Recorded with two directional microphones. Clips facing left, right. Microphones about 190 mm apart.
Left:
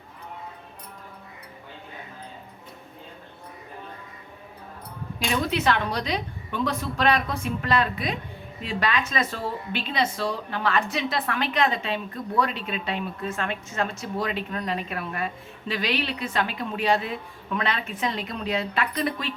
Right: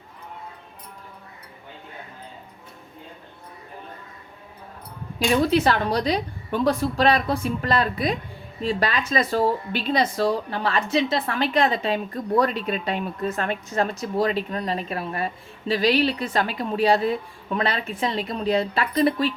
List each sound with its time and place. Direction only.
5.3 s a woman's voice: 35° right (ahead or behind)